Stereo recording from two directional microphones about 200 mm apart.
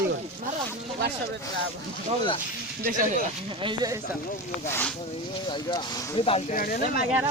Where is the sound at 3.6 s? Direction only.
20° right (ahead or behind).